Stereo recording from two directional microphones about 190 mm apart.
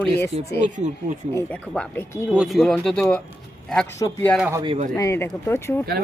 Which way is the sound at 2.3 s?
Centre (ahead or behind).